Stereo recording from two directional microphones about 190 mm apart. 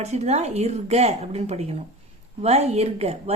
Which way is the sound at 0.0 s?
35° right (ahead or behind).